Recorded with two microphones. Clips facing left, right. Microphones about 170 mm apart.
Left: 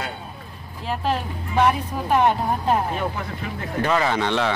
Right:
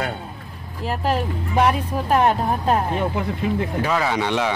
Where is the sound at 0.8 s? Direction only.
5° right (ahead or behind).